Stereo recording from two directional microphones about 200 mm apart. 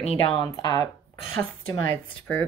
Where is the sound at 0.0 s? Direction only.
30° left (ahead or behind).